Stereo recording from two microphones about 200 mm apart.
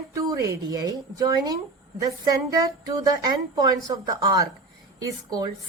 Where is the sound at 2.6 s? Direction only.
15° right (ahead or behind).